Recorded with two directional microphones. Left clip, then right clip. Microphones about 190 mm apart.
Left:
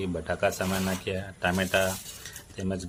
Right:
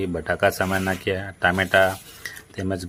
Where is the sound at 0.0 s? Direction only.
25° right (ahead or behind).